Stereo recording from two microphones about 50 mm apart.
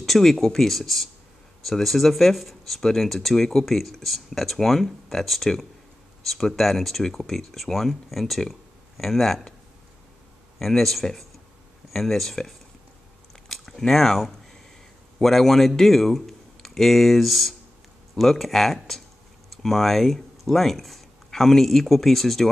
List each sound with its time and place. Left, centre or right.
0.0 s speech: centre
10.6 s speech: centre
13.5 s a sound: centre
15.1 s speech: centre